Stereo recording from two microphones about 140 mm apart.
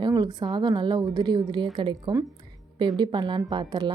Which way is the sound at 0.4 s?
35° right (ahead or behind).